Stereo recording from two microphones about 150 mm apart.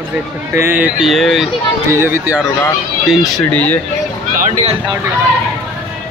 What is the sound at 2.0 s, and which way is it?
Speech, 15° right (ahead or behind).